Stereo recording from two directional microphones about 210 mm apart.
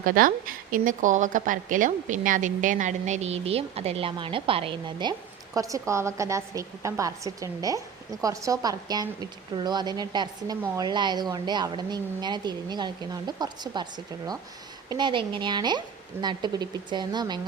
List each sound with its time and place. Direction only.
0.0 s a woman's voice: 40° right (ahead or behind); by 17.4 s 20° right (ahead or behind)